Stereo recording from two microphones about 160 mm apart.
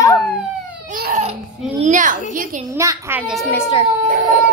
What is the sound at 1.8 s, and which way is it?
Speech, 50° right (ahead or behind).